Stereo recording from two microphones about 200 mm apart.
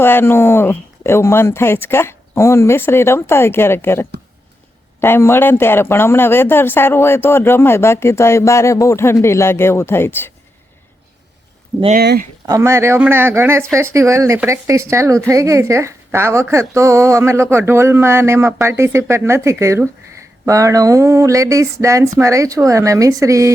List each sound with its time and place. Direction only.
0.0 s speech: 10° left (ahead or behind)
11.9 s speech: 50° right (ahead or behind)
12.5 s speech: 15° right (ahead or behind)